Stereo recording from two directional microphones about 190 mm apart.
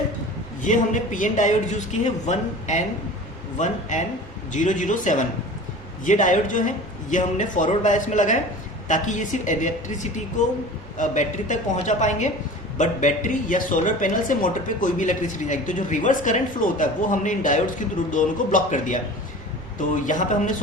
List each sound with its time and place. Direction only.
0.6 s a man's voice: 40° left (ahead or behind)
20.1 s a man's voice: 40° left (ahead or behind)